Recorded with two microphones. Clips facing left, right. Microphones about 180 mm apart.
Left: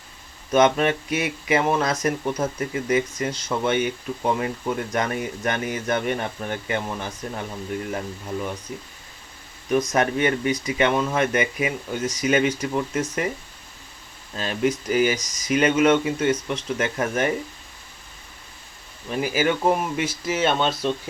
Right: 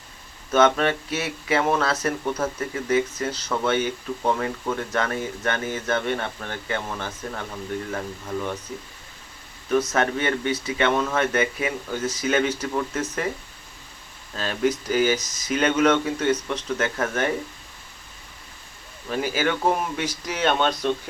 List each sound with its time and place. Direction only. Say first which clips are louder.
0.5 s speech: left 1 dB; 10° left (ahead or behind)
9.6 s speech: left 1 dB; 15° left (ahead or behind)
14.3 s speech: even; 10° left (ahead or behind)
19.1 s speech: left 2 dB; 5° left (ahead or behind)